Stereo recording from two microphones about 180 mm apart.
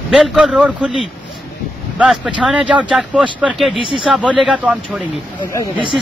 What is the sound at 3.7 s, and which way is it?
Speech, 30° left (ahead or behind).